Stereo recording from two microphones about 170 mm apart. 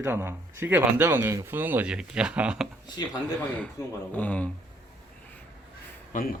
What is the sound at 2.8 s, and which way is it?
Speech, 25° left (ahead or behind).